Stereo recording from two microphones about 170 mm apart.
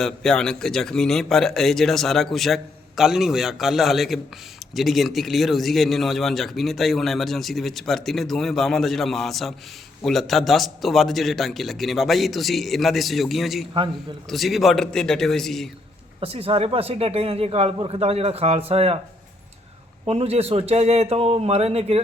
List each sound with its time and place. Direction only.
0.0 s a man's voice: 5° left (ahead or behind)
16.2 s speech: 35° right (ahead or behind)
20.1 s speech: 35° right (ahead or behind)